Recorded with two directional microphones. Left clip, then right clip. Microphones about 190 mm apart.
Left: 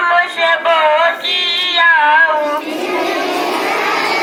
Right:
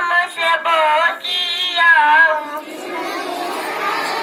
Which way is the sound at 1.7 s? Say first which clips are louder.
Left 1 dB; 65° right (ahead or behind).